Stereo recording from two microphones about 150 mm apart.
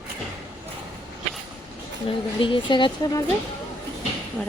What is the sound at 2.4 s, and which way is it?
Speech, 35° left (ahead or behind).